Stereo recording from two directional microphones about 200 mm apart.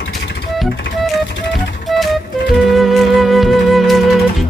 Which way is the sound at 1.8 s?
Centre (ahead or behind).